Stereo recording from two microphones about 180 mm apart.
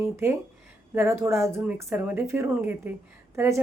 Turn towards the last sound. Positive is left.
turn(degrees=-15)  # may be behind; listen again after turning